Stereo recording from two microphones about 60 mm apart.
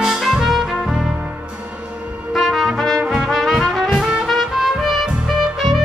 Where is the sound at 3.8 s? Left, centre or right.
Centre.